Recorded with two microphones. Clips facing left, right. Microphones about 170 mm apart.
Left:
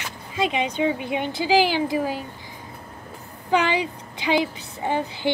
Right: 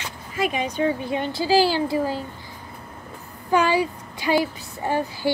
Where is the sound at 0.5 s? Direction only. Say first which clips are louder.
Even; 20° left (ahead or behind).